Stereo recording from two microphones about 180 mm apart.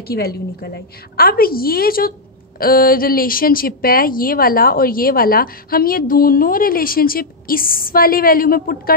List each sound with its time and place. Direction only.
0.0 s a woman's voice: 60° left (ahead or behind)